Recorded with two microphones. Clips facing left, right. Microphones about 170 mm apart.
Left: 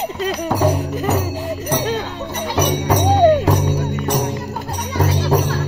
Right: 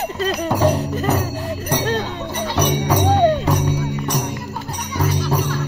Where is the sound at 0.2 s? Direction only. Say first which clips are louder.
Even; 15° left (ahead or behind).